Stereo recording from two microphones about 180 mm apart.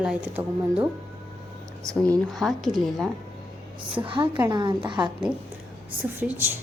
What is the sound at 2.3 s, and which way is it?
Speech, centre (ahead or behind).